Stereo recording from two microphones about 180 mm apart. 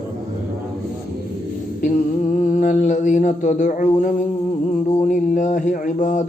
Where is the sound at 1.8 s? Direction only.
45° left (ahead or behind).